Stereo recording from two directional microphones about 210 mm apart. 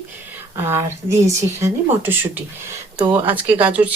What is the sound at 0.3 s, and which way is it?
A woman's voice, 10° right (ahead or behind).